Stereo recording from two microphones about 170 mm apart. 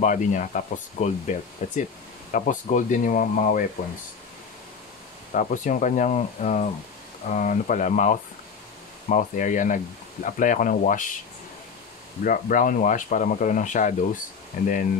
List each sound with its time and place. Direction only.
0.0 s speech: 45° left (ahead or behind)
5.3 s speech: 50° left (ahead or behind)
12.2 s speech: 55° left (ahead or behind)